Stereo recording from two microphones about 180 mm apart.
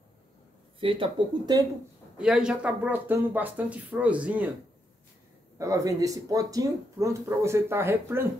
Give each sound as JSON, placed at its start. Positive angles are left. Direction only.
{"t": 0.7, "sound": "speech", "side_deg": -30}
{"t": 2.1, "sound": "speech", "side_deg": -5}
{"t": 5.6, "sound": "speech", "side_deg": -20}